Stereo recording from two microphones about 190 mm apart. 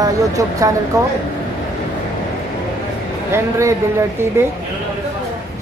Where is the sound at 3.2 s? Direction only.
15° right (ahead or behind).